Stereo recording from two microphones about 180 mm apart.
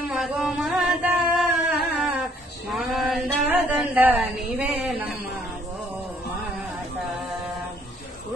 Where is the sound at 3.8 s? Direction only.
5° right (ahead or behind).